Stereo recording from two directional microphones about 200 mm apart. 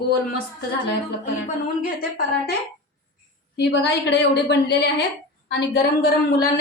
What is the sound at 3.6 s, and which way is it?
A woman's voice, 60° left (ahead or behind).